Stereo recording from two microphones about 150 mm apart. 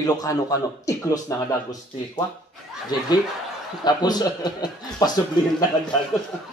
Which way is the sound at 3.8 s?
30° left (ahead or behind).